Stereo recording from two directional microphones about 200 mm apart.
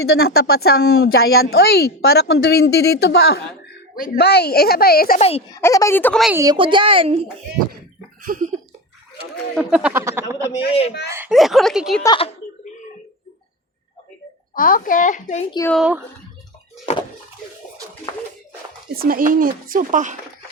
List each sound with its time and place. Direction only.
0.0 s speech: 55° left (ahead or behind)
5.5 s speech: 15° left (ahead or behind)
6.4 s a child's voice: 20° right (ahead or behind)
8.2 s a sound: 40° right (ahead or behind)
9.6 s speech: 5° right (ahead or behind)
10.7 s speech: 30° left (ahead or behind)
11.1 s speech: 5° right (ahead or behind)
12.0 s speech: 25° left (ahead or behind)
14.5 s speech: 45° left (ahead or behind)
15.7 s speech: 5° right (ahead or behind)
18.9 s speech: 45° right (ahead or behind)